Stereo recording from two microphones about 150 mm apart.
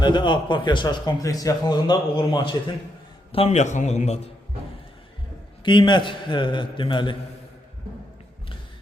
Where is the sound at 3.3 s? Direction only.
45° left (ahead or behind).